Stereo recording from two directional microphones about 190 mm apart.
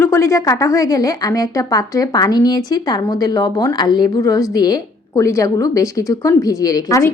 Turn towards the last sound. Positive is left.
turn(degrees=15)  # may be behind; listen again after turning